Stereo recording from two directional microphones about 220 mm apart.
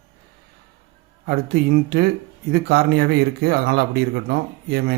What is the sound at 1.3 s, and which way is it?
Speech, 45° right (ahead or behind).